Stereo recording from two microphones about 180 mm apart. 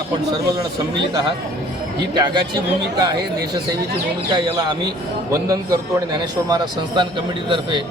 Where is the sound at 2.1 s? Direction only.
25° right (ahead or behind).